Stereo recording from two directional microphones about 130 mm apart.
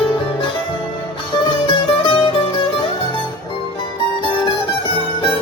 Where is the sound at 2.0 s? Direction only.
40° left (ahead or behind).